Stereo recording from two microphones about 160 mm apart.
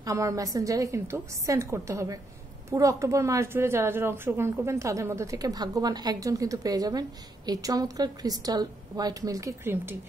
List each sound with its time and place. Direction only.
0.0 s a woman's voice: 20° right (ahead or behind)